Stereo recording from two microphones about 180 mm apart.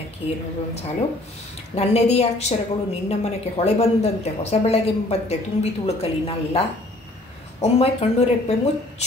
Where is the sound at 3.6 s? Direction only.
40° left (ahead or behind).